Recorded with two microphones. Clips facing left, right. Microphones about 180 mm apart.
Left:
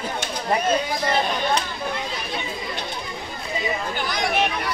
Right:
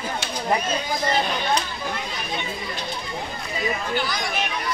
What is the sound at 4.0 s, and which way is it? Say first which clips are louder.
Speech: left 3 dB; 55° left (ahead or behind).